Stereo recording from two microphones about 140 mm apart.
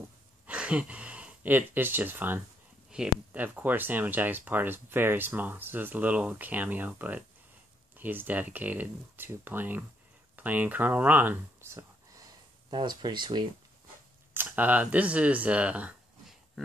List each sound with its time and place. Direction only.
0.5 s speech: 10° right (ahead or behind); by 13.5 s 35° right (ahead or behind)
14.3 s speech: 15° right (ahead or behind)